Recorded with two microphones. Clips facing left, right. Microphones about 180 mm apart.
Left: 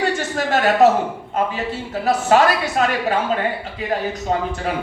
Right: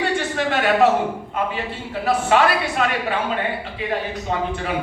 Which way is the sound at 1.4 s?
40° left (ahead or behind).